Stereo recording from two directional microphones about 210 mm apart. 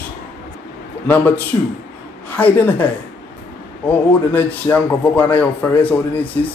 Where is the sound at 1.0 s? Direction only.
10° left (ahead or behind).